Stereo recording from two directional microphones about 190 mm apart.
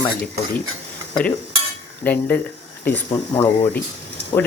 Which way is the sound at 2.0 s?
10° left (ahead or behind).